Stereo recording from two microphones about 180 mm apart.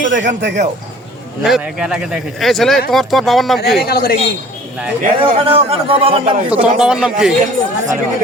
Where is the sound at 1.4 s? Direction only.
Centre (ahead or behind).